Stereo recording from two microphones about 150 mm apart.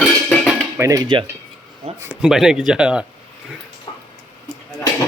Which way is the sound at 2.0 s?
5° right (ahead or behind).